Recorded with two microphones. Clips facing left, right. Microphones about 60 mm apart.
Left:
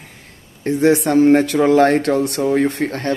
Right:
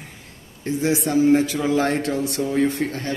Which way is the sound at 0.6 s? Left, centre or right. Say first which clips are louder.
Left 7 dB; left.